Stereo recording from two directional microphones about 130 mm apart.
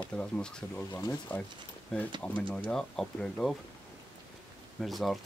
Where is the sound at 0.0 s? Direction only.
10° left (ahead or behind).